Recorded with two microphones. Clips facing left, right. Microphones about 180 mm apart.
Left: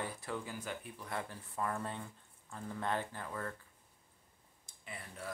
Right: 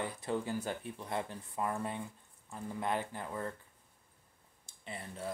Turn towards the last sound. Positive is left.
turn(degrees=-25)  # may be behind; listen again after turning